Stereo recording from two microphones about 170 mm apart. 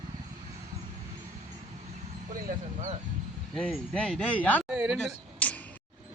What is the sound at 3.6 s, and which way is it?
Speech, 5° left (ahead or behind).